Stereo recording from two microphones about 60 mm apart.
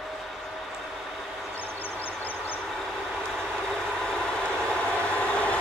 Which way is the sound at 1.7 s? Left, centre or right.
Left.